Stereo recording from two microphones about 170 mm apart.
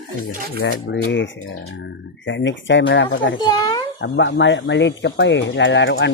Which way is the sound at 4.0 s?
90° left.